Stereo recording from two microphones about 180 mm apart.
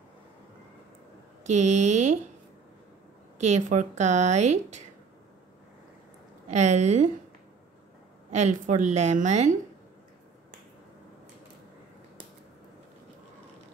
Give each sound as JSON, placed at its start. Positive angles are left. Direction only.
{"t": 1.4, "sound": "a woman's voice", "side_deg": -40}
{"t": 3.3, "sound": "a woman's voice", "side_deg": -40}
{"t": 6.5, "sound": "a woman's voice", "side_deg": -40}
{"t": 8.3, "sound": "a woman's voice", "side_deg": -40}